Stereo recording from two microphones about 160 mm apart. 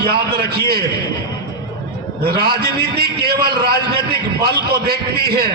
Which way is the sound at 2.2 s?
75° right (ahead or behind).